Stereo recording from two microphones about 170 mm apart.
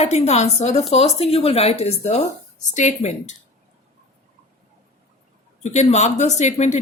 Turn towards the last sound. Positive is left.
turn(degrees=40)  # may be behind; listen again after turning